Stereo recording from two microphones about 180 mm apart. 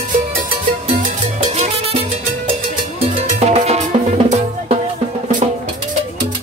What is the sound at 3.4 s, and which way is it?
Cowbell, 35° right (ahead or behind).